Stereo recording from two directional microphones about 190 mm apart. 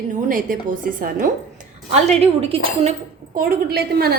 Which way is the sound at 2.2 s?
30° right (ahead or behind).